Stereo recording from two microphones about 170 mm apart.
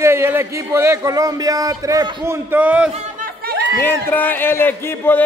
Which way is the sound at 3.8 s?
10° left (ahead or behind).